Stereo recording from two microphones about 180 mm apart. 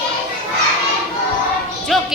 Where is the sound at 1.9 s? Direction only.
Centre (ahead or behind).